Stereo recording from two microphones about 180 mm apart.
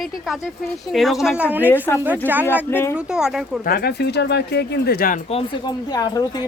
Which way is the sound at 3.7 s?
60° left (ahead or behind).